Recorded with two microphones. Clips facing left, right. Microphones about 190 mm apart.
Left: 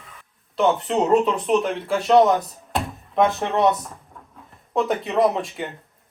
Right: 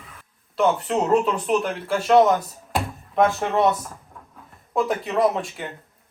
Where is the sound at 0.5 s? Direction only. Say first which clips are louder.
Left 1 dB; centre (ahead or behind).